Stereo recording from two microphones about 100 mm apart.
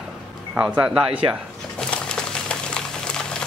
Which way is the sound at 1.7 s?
5° left (ahead or behind).